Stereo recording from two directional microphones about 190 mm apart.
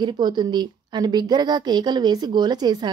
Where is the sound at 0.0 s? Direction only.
20° right (ahead or behind).